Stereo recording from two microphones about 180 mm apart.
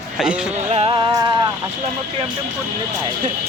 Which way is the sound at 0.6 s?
35° right (ahead or behind).